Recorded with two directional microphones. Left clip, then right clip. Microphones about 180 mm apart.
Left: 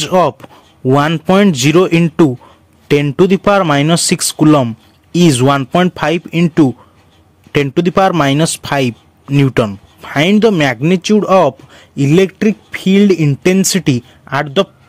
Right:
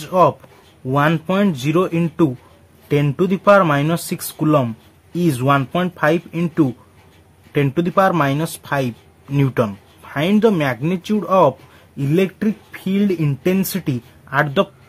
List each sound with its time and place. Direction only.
0.0 s speech: 45° left (ahead or behind)
5.9 s speech: 45° left (ahead or behind)
10.3 s speech: 30° left (ahead or behind)
10.6 s speech: 40° left (ahead or behind)